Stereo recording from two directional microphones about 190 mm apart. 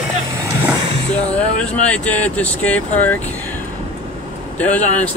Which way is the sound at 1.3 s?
5° left (ahead or behind).